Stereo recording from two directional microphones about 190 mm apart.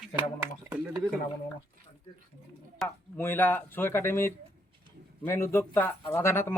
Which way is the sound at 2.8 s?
10° left (ahead or behind).